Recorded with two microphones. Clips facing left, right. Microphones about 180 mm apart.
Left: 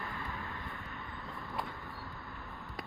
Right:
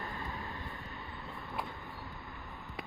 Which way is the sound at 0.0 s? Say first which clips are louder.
Right 1 dB; 20° right (ahead or behind).